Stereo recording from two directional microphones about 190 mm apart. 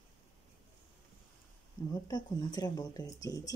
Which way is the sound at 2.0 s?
20° left (ahead or behind).